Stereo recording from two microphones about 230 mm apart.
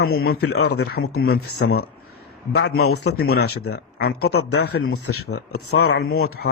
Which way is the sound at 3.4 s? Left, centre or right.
Left.